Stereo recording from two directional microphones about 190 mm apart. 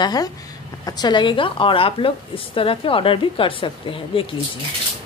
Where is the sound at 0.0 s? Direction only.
20° left (ahead or behind).